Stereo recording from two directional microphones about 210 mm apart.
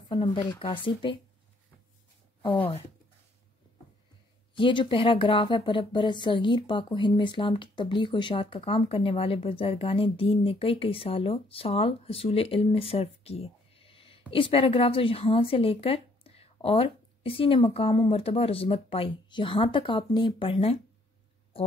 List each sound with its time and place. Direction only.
0.1 s speech: 20° left (ahead or behind)
4.6 s speech: 25° left (ahead or behind)